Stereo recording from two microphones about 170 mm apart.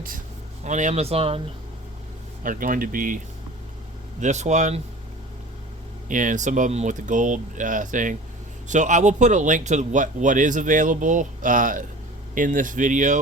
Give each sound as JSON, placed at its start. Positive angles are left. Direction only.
{"t": 0.6, "sound": "speech", "side_deg": -45}
{"t": 2.4, "sound": "a man's voice", "side_deg": -55}
{"t": 4.2, "sound": "a man's voice", "side_deg": -45}
{"t": 6.1, "sound": "a man's voice", "side_deg": -50}